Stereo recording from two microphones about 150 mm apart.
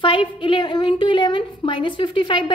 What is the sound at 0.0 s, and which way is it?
A woman's voice, 35° left (ahead or behind).